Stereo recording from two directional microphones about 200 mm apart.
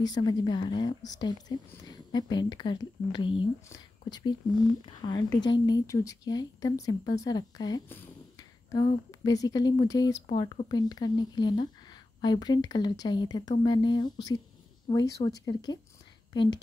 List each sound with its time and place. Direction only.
0.0 s speech: 20° left (ahead or behind)